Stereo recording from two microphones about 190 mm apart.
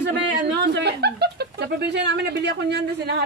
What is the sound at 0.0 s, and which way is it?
Speech, 65° right (ahead or behind).